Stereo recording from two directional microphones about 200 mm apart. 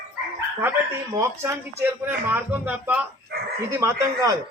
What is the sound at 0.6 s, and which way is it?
Speech, 10° right (ahead or behind).